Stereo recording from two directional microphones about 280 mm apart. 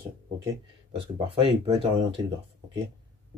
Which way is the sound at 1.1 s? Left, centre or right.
Centre.